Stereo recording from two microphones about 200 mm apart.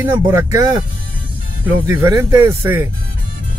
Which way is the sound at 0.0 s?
15° right (ahead or behind).